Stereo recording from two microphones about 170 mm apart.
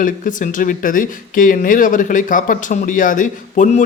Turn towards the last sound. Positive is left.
turn(degrees=45)  # may be behind; listen again after turning